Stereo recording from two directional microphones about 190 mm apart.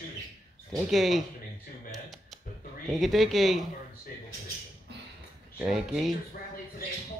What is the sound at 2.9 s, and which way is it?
Speech, centre (ahead or behind).